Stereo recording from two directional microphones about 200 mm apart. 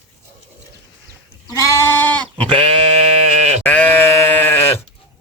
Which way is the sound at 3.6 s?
10° left (ahead or behind).